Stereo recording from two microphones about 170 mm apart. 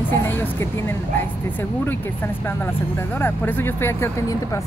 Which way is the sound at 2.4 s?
15° left (ahead or behind).